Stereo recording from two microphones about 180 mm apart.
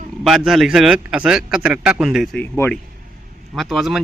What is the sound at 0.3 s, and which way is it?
Speech, centre (ahead or behind).